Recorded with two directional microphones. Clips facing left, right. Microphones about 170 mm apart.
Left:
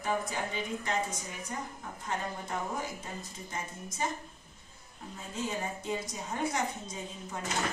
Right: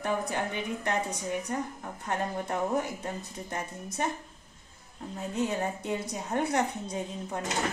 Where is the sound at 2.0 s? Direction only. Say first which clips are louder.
Right 5 dB; 65° right (ahead or behind).